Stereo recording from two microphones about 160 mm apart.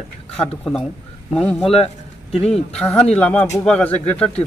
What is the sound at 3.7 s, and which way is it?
Speech, 5° left (ahead or behind).